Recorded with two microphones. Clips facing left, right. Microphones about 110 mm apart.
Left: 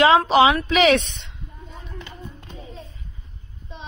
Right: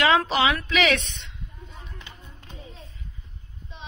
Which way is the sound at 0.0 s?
25° left (ahead or behind).